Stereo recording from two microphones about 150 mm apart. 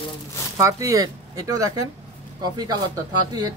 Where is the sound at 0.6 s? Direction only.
20° right (ahead or behind).